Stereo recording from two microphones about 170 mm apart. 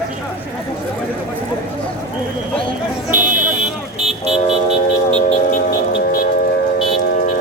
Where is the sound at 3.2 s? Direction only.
50° right (ahead or behind).